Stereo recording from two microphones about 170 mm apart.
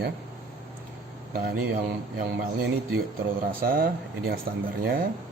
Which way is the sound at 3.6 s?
60° right (ahead or behind).